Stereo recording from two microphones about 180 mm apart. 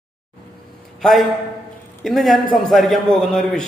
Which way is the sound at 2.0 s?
Centre (ahead or behind).